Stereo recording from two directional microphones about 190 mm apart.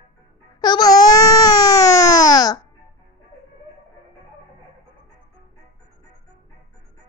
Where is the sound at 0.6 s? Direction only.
20° left (ahead or behind).